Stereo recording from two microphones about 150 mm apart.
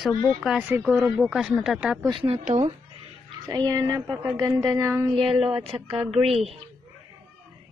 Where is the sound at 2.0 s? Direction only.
30° right (ahead or behind).